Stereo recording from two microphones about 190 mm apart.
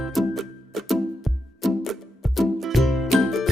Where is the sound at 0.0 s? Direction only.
Centre (ahead or behind).